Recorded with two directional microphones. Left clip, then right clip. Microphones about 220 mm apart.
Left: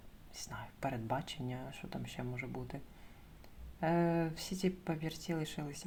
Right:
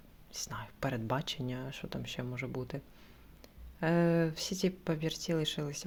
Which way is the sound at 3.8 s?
35° right (ahead or behind).